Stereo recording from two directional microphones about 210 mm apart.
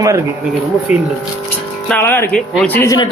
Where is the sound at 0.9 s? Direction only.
35° left (ahead or behind).